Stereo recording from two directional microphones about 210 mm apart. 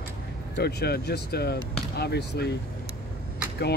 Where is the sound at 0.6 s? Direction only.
50° left (ahead or behind).